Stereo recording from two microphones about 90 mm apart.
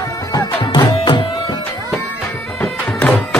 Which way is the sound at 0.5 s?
60° left (ahead or behind).